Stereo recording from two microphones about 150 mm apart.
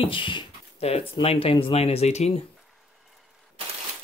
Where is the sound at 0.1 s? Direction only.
35° left (ahead or behind).